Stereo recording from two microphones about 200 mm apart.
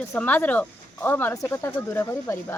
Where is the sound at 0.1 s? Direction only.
10° left (ahead or behind).